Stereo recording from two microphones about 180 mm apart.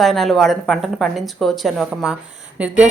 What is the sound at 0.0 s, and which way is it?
Speech, centre (ahead or behind).